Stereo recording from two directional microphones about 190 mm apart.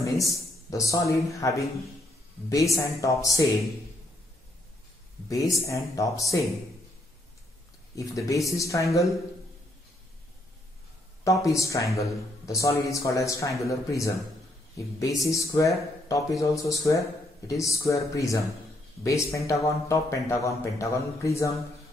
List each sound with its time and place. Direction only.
0.0 s a man's voice: 15° left (ahead or behind)
5.3 s a man's voice: 15° left (ahead or behind)
7.9 s a man's voice: 15° left (ahead or behind)
11.4 s a man's voice: 15° left (ahead or behind)